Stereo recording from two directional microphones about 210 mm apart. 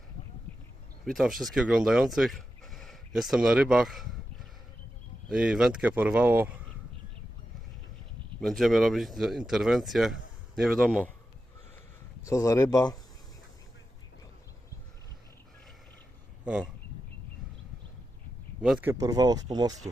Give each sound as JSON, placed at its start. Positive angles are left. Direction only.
{"t": 1.0, "sound": "speech", "side_deg": 0}
{"t": 5.3, "sound": "speech", "side_deg": -5}
{"t": 8.4, "sound": "speech", "side_deg": 0}
{"t": 12.2, "sound": "speech", "side_deg": 15}
{"t": 16.4, "sound": "speech", "side_deg": -5}
{"t": 18.6, "sound": "speech", "side_deg": -5}